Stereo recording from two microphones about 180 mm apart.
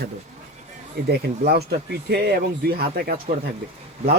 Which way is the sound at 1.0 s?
60° right (ahead or behind).